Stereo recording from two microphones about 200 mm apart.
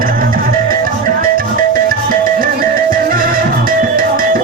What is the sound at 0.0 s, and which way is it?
Music, 45° right (ahead or behind).